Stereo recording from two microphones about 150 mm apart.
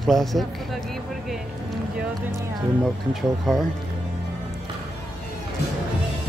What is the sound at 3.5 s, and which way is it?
Speech, 5° left (ahead or behind).